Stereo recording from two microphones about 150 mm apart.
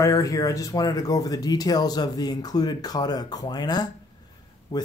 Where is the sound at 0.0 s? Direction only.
20° left (ahead or behind).